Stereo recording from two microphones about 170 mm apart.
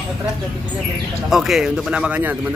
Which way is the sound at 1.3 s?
Centre (ahead or behind).